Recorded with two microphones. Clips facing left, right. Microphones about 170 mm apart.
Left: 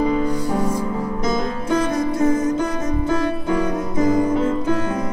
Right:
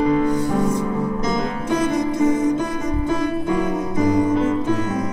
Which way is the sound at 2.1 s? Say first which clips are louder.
Even; 15° right (ahead or behind).